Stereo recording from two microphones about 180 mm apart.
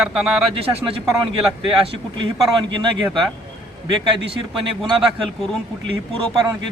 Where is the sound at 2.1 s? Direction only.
25° right (ahead or behind).